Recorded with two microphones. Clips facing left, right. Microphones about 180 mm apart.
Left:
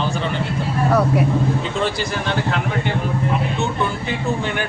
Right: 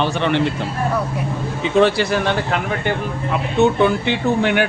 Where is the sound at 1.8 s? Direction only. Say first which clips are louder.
Right 7 dB; 70° right (ahead or behind).